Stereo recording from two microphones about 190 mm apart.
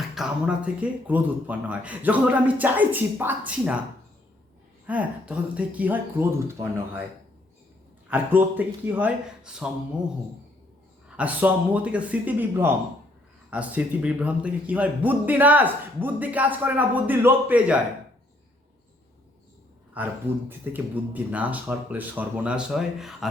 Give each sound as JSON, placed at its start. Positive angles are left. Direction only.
{"t": 0.1, "sound": "a man's voice", "side_deg": -5}
{"t": 4.9, "sound": "a man's voice", "side_deg": -5}
{"t": 8.0, "sound": "a man's voice", "side_deg": -10}
{"t": 11.2, "sound": "a man's voice", "side_deg": -10}
{"t": 20.0, "sound": "a man's voice", "side_deg": -10}